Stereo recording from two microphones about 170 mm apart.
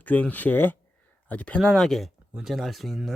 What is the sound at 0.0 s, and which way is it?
Speech, 10° left (ahead or behind).